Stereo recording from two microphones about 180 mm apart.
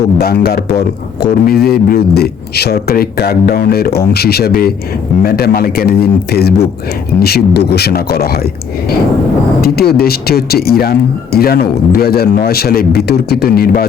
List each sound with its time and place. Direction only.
0.2 s a man's voice: 60° left (ahead or behind)
9.6 s a man's voice: 60° left (ahead or behind)